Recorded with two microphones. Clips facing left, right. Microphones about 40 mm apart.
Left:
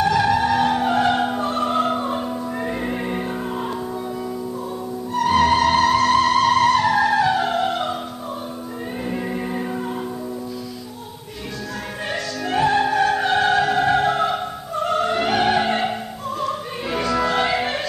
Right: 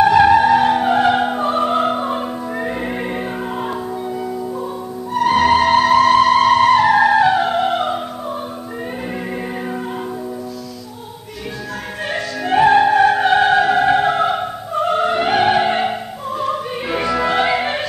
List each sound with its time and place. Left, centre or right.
0.0 s opera: right
5.1 s music: right
12.1 s opera: right